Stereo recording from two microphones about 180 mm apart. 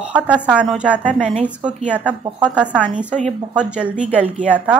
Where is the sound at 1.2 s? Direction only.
40° right (ahead or behind).